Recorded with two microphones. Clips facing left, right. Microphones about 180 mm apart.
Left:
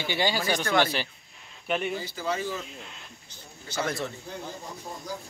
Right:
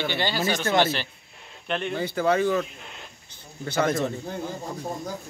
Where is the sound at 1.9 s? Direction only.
60° right (ahead or behind).